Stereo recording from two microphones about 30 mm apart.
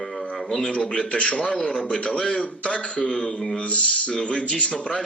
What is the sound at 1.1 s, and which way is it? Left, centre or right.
A man's voice, left.